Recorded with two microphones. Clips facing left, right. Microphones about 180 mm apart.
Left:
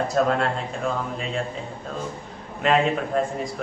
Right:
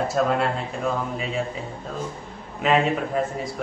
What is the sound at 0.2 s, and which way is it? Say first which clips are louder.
Speech: left 2 dB; 5° right (ahead or behind).